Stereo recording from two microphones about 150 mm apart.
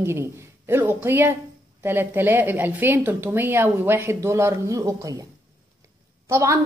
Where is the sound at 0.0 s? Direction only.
15° right (ahead or behind).